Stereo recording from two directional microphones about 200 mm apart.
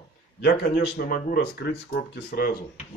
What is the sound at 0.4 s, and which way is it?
Speech, 55° left (ahead or behind).